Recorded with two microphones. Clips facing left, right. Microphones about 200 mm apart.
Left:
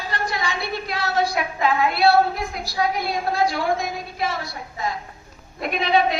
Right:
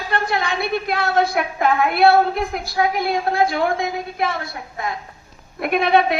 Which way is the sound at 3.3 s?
55° right (ahead or behind).